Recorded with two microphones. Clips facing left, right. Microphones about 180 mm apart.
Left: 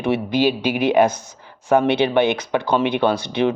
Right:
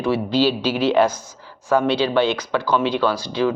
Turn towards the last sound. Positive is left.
turn(degrees=20)  # may be behind; listen again after turning